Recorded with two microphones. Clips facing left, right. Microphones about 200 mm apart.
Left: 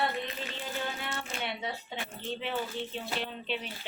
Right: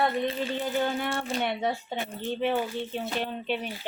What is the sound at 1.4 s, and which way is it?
Speech, 50° right (ahead or behind).